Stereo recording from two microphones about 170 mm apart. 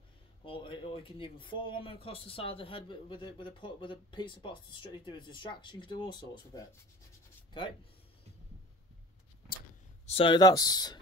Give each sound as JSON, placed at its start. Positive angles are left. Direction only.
{"t": 0.5, "sound": "speech", "side_deg": 30}
{"t": 10.0, "sound": "speech", "side_deg": 30}